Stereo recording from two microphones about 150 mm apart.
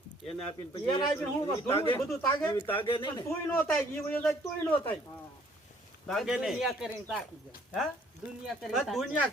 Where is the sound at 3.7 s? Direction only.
10° left (ahead or behind).